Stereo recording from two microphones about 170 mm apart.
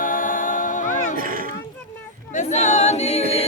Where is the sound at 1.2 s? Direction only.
55° right (ahead or behind).